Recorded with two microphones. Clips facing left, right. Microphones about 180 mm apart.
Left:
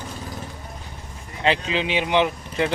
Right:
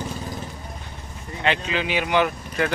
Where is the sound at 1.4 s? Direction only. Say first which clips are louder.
Left 2 dB; 30° left (ahead or behind).